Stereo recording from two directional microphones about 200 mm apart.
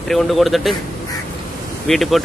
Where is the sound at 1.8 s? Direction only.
Centre (ahead or behind).